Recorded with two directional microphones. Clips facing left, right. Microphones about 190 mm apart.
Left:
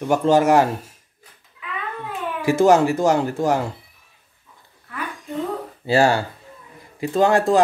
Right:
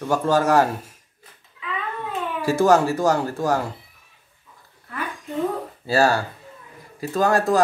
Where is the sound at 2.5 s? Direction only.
20° left (ahead or behind).